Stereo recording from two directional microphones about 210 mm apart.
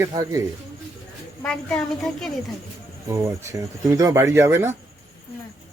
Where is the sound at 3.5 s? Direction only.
15° right (ahead or behind).